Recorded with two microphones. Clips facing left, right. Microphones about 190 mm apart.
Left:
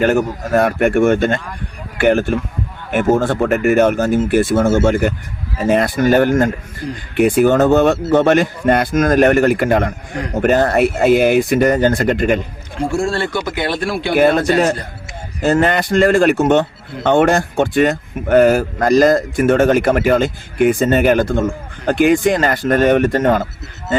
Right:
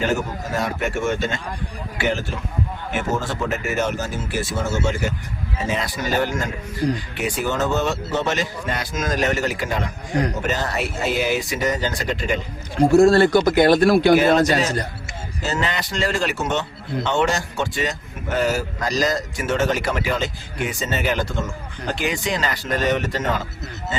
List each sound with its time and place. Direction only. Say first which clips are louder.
0.0 s speech: left 8 dB; 55° left (ahead or behind)
6.8 s speech: right 4 dB; 40° right (ahead or behind)
7.2 s speech: left 16 dB; 55° left (ahead or behind)
12.8 s speech: right 6 dB; 40° right (ahead or behind)
14.2 s speech: left 4 dB; 55° left (ahead or behind)